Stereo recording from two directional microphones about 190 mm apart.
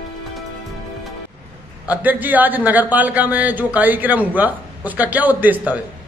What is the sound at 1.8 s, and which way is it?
A man's voice, 10° right (ahead or behind).